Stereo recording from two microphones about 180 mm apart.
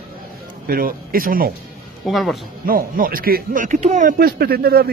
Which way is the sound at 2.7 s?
55° right (ahead or behind).